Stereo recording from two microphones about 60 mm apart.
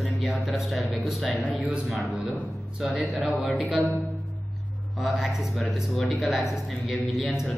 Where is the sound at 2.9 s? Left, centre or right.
Centre.